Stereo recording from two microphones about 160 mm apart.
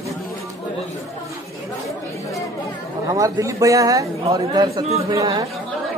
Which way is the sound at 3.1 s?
20° right (ahead or behind).